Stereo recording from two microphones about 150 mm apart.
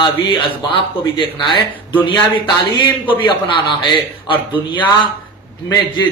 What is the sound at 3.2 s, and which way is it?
A man's voice, 35° left (ahead or behind).